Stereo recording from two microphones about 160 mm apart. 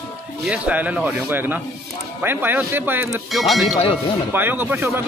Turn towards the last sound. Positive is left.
turn(degrees=-15)  # may be behind; listen again after turning